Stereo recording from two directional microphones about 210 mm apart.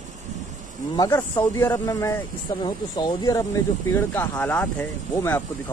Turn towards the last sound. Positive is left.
turn(degrees=10)  # may be behind; listen again after turning